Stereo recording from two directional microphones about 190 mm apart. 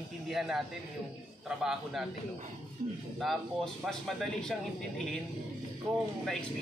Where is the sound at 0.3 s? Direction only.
Centre (ahead or behind).